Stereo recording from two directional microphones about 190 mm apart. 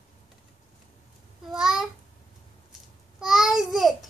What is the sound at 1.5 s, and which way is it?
Babbling, 5° right (ahead or behind).